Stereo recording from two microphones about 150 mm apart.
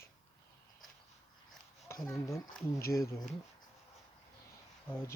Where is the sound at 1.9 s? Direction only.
20° left (ahead or behind).